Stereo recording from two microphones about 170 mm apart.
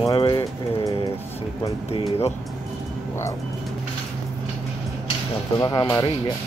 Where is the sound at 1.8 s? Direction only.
35° left (ahead or behind).